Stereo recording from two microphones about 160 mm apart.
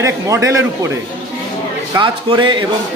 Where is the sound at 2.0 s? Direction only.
30° right (ahead or behind).